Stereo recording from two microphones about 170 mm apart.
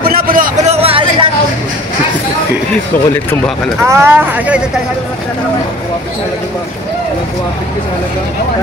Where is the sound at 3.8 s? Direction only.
15° right (ahead or behind).